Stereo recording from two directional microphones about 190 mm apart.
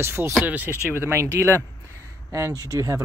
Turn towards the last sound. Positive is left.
turn(degrees=-15)  # may be behind; listen again after turning